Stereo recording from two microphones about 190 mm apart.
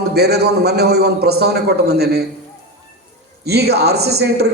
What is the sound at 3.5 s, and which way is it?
A man's voice, 60° right (ahead or behind).